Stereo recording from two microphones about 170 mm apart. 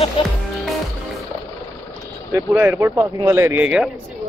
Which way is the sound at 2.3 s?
15° right (ahead or behind).